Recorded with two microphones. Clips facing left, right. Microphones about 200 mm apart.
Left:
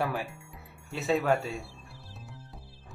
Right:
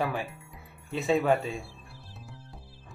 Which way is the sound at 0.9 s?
Centre (ahead or behind).